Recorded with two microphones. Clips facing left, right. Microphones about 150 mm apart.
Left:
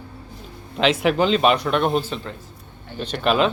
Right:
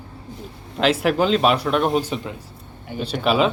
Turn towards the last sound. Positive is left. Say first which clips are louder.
# right 1 dB
turn(degrees=-5)  # may be behind; listen again after turning